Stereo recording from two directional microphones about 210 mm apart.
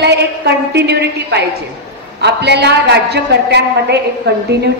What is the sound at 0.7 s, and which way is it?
A woman's voice, 50° right (ahead or behind).